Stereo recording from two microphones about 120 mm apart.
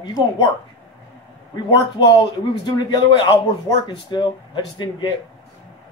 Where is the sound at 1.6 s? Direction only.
45° left (ahead or behind).